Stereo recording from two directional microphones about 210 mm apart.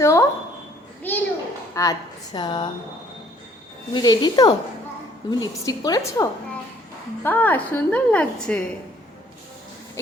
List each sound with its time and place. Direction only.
0.0 s a woman's voice: 15° left (ahead or behind)
1.1 s a sound: 10° left (ahead or behind)
1.7 s a woman's voice: 15° left (ahead or behind)
3.9 s a woman's voice: 20° left (ahead or behind)